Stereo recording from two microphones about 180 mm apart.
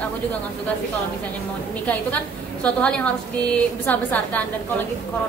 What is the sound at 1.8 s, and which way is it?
A woman's voice, 5° left (ahead or behind).